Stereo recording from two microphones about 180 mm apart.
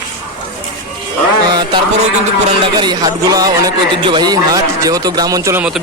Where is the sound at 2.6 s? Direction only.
25° right (ahead or behind).